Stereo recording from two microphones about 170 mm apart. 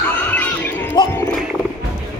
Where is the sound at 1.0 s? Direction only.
25° left (ahead or behind).